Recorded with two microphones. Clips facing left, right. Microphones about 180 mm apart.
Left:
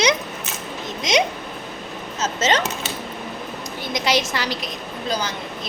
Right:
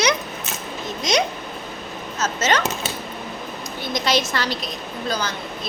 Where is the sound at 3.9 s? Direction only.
15° left (ahead or behind).